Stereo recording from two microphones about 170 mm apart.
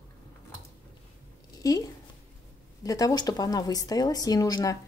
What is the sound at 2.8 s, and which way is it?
Speech, 20° left (ahead or behind).